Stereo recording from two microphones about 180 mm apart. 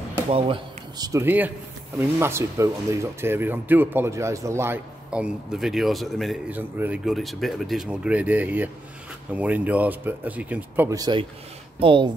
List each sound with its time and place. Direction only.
0.3 s speech: 30° right (ahead or behind)